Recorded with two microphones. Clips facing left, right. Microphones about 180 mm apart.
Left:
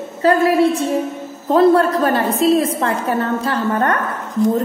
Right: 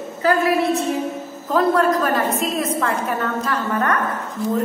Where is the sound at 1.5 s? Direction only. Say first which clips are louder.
Left 5 dB; 30° left (ahead or behind).